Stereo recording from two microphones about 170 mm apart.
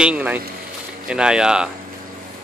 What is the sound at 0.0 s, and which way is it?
Speech, 10° right (ahead or behind).